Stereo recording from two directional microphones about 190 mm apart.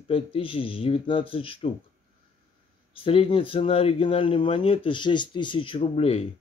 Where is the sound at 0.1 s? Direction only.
30° left (ahead or behind).